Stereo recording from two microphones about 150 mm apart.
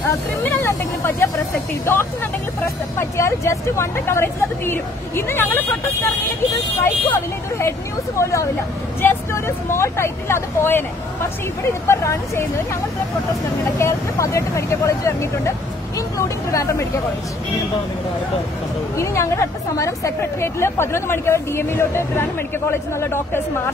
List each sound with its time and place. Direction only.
0.1 s vehicle: 20° left (ahead or behind)
1.9 s a woman's voice: 15° left (ahead or behind)
11.9 s speech: 20° left (ahead or behind)
13.7 s speech: 20° left (ahead or behind)
18.9 s a woman's voice: 20° left (ahead or behind)